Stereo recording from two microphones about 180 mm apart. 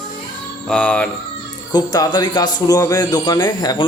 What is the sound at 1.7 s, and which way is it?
Speech, 20° left (ahead or behind).